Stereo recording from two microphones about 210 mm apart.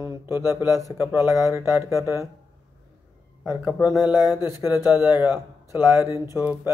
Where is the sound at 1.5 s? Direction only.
15° left (ahead or behind).